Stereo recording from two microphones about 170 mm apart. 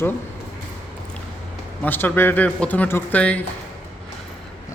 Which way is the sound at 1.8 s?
10° left (ahead or behind).